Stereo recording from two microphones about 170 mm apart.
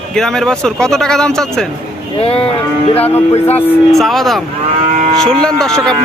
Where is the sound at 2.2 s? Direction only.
35° left (ahead or behind).